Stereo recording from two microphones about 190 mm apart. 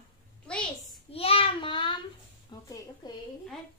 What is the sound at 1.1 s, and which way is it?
Child singing, 30° left (ahead or behind).